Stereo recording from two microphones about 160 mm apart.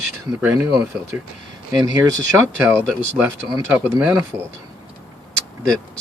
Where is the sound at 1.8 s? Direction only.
25° right (ahead or behind).